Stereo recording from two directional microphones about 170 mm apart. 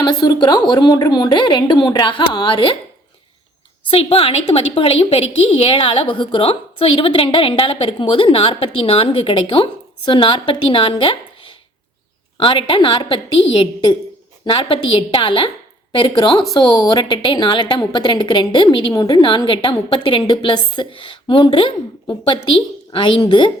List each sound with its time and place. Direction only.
0.0 s a woman's voice: 25° left (ahead or behind)
3.8 s a woman's voice: 35° left (ahead or behind)